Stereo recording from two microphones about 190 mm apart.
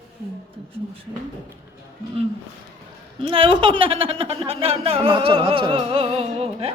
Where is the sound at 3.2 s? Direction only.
30° right (ahead or behind).